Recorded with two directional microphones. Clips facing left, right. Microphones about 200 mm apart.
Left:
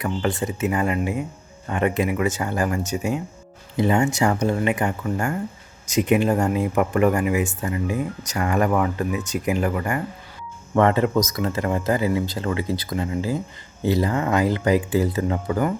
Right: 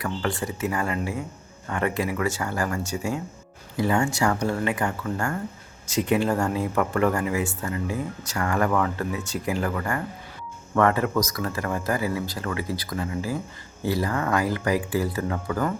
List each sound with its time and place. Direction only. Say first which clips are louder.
0.0 s speech: left 4 dB; 20° left (ahead or behind)